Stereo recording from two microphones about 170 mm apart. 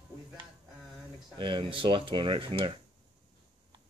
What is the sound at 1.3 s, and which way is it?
Speech, 30° right (ahead or behind).